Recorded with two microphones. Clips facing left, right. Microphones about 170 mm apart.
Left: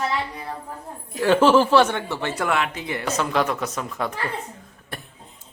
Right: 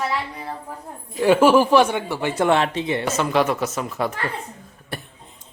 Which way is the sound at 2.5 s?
30° right (ahead or behind).